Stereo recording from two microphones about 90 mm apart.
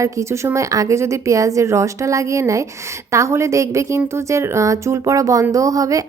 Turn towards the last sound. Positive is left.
turn(degrees=-40)  # may be behind; listen again after turning